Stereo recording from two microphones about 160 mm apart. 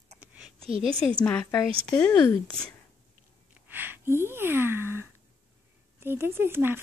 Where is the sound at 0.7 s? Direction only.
35° right (ahead or behind).